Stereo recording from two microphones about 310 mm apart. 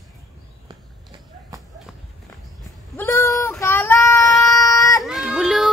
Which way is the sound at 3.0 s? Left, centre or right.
Centre.